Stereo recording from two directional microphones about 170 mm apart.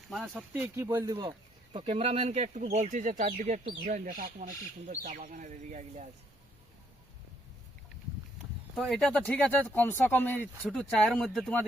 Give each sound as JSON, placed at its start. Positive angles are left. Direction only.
{"t": 0.1, "sound": "speech", "side_deg": -5}
{"t": 1.7, "sound": "speech", "side_deg": -35}
{"t": 8.7, "sound": "speech", "side_deg": 0}